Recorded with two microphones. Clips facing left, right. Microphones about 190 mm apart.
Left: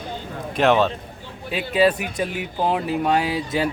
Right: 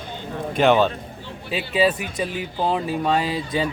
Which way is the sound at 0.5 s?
Centre (ahead or behind).